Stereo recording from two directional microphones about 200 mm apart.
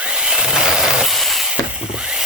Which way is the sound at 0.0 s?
5° right (ahead or behind).